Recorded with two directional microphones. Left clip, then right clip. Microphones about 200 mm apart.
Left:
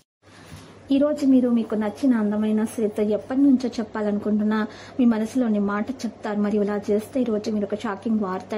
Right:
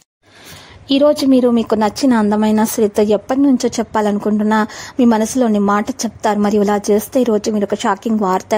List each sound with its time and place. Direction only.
0.8 s a woman's voice: 50° right (ahead or behind)